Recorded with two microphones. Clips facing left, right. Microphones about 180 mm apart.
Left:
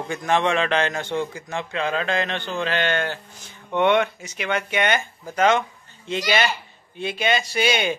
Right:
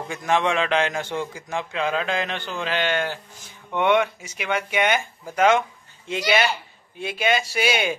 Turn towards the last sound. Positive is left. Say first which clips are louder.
# left 1 dB
turn(degrees=-5)  # may be behind; listen again after turning